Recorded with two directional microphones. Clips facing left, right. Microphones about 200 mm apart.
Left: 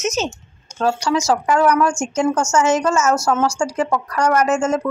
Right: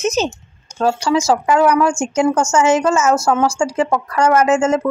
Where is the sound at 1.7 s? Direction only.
5° right (ahead or behind).